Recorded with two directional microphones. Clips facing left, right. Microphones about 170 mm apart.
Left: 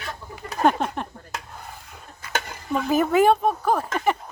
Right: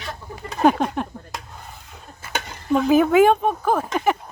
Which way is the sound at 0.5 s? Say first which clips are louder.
Right 3 dB; centre (ahead or behind).